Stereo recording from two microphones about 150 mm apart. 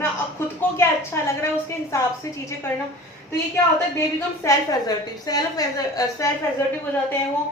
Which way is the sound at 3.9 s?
20° left (ahead or behind).